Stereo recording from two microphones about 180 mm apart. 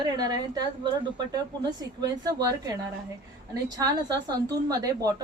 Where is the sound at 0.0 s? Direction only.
20° right (ahead or behind).